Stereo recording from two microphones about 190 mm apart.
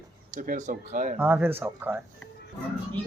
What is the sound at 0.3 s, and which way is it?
Speech, 45° right (ahead or behind).